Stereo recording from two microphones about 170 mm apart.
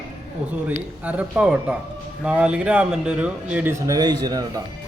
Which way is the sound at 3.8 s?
25° right (ahead or behind).